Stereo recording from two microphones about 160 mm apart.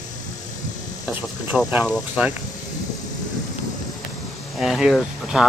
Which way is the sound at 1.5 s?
15° left (ahead or behind).